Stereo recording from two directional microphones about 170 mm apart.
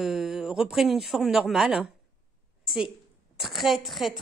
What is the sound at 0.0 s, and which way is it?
Speech, centre (ahead or behind).